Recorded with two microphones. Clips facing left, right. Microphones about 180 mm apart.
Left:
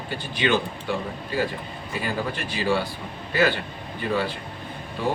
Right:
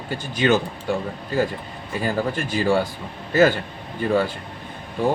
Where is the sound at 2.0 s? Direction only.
45° right (ahead or behind).